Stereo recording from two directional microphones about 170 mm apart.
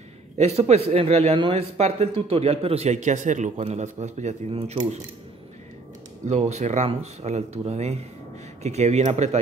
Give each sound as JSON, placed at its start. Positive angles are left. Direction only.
{"t": 0.4, "sound": "a man's voice", "side_deg": -40}
{"t": 6.2, "sound": "a man's voice", "side_deg": -40}